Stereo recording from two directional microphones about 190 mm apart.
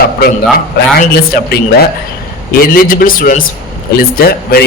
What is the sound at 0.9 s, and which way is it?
A woman's voice, 55° left (ahead or behind).